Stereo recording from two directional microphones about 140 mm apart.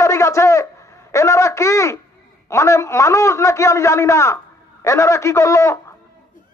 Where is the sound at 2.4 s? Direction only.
20° left (ahead or behind).